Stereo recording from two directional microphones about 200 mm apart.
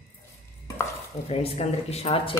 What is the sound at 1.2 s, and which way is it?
Speech, 30° left (ahead or behind).